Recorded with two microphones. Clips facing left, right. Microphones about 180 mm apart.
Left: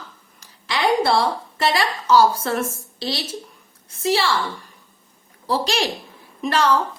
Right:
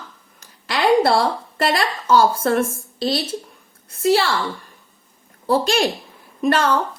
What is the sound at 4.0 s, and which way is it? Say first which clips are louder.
Speech: right 3 dB; 60° right (ahead or behind).